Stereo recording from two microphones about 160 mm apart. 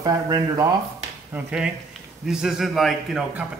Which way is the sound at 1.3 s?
5° right (ahead or behind).